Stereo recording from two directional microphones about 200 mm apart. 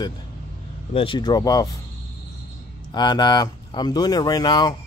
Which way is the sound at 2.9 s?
20° left (ahead or behind).